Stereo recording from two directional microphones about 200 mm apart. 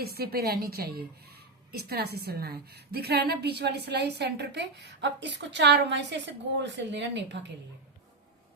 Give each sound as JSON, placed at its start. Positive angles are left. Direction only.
{"t": 0.0, "sound": "a woman's voice", "side_deg": -50}